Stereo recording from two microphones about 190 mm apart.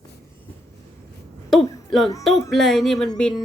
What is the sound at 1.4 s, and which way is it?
A woman's voice, centre (ahead or behind).